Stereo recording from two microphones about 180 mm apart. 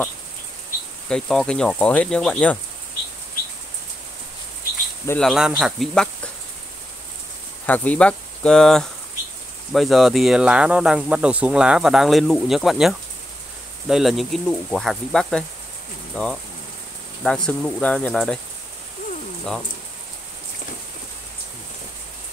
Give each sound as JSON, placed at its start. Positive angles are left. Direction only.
{"t": 1.0, "sound": "speech", "side_deg": 5}
{"t": 5.0, "sound": "speech", "side_deg": 10}
{"t": 5.3, "sound": "speech", "side_deg": 0}
{"t": 7.6, "sound": "speech", "side_deg": 10}